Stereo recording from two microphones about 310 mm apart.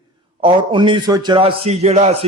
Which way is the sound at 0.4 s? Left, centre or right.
Centre.